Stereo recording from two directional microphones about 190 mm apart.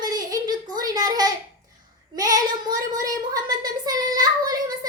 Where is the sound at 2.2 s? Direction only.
20° right (ahead or behind).